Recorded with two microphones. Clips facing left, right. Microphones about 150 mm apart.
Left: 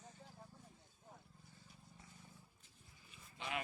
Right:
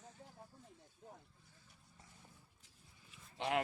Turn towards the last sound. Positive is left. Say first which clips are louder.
# right 8 dB
turn(degrees=-70)  # may be behind; listen again after turning